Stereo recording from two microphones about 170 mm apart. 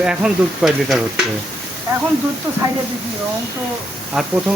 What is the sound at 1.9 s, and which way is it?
Speech, 15° right (ahead or behind).